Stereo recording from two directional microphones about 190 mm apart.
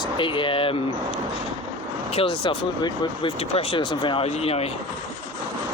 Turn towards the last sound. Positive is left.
turn(degrees=35)  # may be behind; listen again after turning